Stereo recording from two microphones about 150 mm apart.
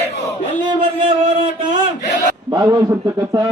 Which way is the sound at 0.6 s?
35° right (ahead or behind).